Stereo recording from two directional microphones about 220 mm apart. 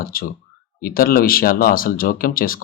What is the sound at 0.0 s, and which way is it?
Speech, 40° left (ahead or behind).